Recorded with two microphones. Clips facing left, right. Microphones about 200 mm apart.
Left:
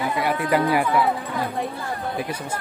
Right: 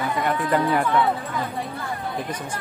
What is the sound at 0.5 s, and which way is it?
Speech, 10° left (ahead or behind).